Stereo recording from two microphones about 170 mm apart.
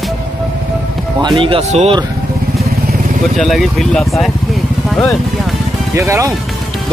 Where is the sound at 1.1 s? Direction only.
30° right (ahead or behind).